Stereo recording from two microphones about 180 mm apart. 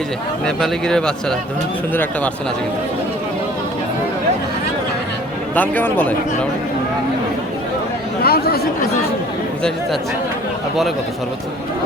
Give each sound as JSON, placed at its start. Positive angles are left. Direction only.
{"t": 0.4, "sound": "a man's voice", "side_deg": 5}
{"t": 5.5, "sound": "a man's voice", "side_deg": 10}
{"t": 8.2, "sound": "chatter", "side_deg": 60}